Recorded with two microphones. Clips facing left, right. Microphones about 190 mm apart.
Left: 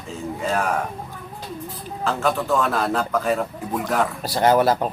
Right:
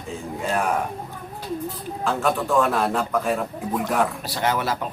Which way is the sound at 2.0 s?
Centre (ahead or behind).